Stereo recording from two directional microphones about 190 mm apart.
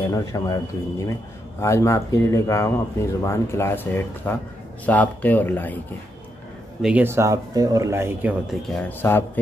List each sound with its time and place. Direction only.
0.1 s speech: 20° left (ahead or behind)
6.8 s speech: 10° right (ahead or behind); by 9.4 s 10° left (ahead or behind)